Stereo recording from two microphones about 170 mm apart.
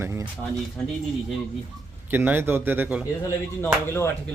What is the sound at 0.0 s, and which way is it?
Speech, 15° right (ahead or behind).